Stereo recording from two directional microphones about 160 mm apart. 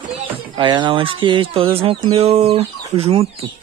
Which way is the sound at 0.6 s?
30° right (ahead or behind).